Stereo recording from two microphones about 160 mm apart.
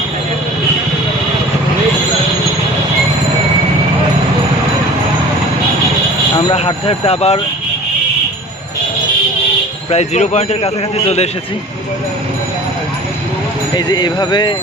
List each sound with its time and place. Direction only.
6.3 s speech: 30° left (ahead or behind)
9.9 s a man's voice: 45° left (ahead or behind)
13.7 s speech: 25° left (ahead or behind)